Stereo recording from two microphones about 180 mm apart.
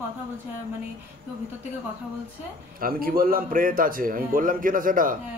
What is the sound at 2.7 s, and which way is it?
A man's voice, 55° right (ahead or behind).